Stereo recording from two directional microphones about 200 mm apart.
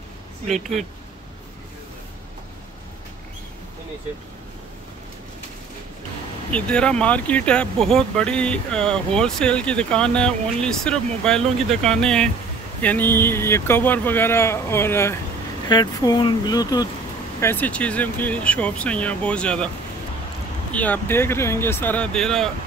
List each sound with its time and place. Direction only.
0.5 s speech: centre (ahead or behind)
6.5 s speech: 5° left (ahead or behind)
20.7 s speech: 10° left (ahead or behind)